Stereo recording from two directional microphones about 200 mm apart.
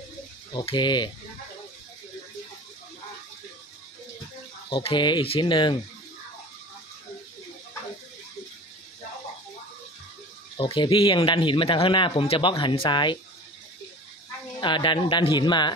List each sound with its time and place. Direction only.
0.5 s speech: 20° left (ahead or behind)
4.6 s speech: 25° left (ahead or behind)
10.6 s speech: 25° left (ahead or behind)
14.6 s speech: 25° left (ahead or behind)